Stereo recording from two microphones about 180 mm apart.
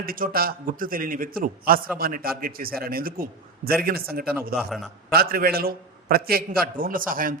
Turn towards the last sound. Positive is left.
turn(degrees=-50)  # may be behind; listen again after turning